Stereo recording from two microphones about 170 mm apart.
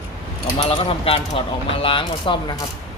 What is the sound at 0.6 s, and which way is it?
Speech, 30° left (ahead or behind).